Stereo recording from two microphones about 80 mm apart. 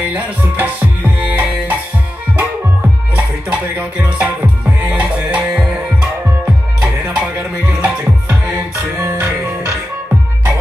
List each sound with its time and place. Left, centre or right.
0.1 s music: right
3.2 s music: centre
6.4 s music: centre
8.5 s music: right